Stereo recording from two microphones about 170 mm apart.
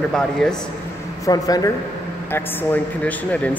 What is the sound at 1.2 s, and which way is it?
Speech, 20° left (ahead or behind).